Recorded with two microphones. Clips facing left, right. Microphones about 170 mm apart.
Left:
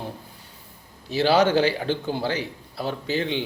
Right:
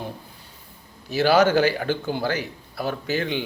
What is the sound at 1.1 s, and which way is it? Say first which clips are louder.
A man's voice: right 1 dB; 30° left (ahead or behind).